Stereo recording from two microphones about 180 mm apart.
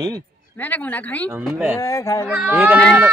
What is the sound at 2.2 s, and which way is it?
Speech, 10° right (ahead or behind).